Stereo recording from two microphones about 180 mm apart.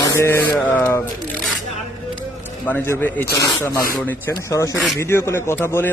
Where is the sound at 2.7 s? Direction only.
10° left (ahead or behind).